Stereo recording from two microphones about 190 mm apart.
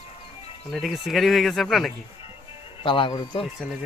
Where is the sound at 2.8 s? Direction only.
25° left (ahead or behind).